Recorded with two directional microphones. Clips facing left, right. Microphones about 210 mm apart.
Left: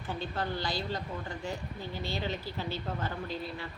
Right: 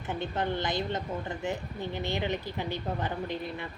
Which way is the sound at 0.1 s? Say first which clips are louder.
Right 4 dB; 20° right (ahead or behind).